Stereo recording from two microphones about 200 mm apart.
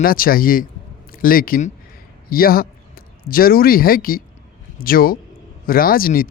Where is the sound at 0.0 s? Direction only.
45° left (ahead or behind).